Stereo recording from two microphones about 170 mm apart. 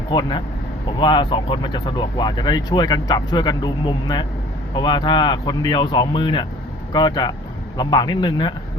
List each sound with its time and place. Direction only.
0.1 s speech: 25° left (ahead or behind)